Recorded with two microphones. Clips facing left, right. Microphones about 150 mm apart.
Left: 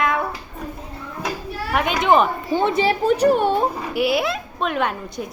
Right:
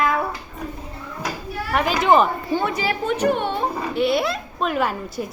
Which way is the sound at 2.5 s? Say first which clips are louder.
Left 4 dB; 20° left (ahead or behind).